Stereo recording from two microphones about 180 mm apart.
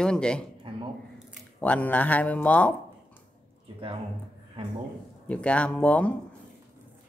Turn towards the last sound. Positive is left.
turn(degrees=5)  # may be behind; listen again after turning